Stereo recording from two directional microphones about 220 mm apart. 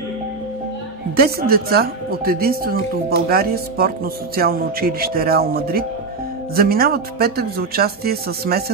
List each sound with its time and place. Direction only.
1.1 s speech: 45° right (ahead or behind)